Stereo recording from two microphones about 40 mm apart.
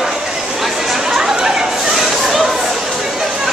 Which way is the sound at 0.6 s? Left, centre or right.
Centre.